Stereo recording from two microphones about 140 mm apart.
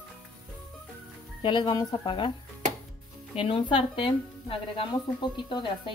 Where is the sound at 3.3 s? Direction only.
40° left (ahead or behind).